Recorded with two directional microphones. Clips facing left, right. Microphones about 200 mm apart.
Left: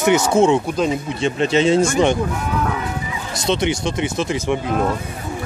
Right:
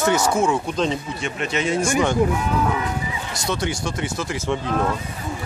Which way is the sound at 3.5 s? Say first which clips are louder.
Left 6 dB; 20° left (ahead or behind).